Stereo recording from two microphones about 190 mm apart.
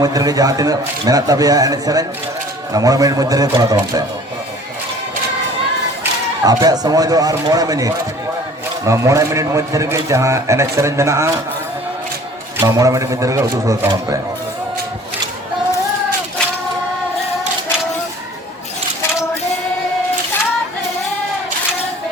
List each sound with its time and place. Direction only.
0.0 s a man's voice: 20° right (ahead or behind)
6.0 s a man's voice: 20° right (ahead or behind)
12.5 s a man's voice: 15° right (ahead or behind)